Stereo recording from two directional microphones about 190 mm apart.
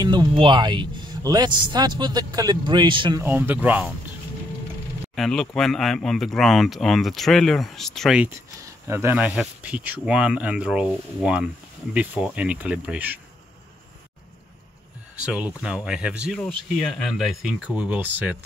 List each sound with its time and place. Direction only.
0.0 s speech: 20° right (ahead or behind)
3.2 s speech: 10° right (ahead or behind)
5.1 s speech: centre (ahead or behind)
8.8 s speech: 15° right (ahead or behind)
15.2 s speech: 5° right (ahead or behind)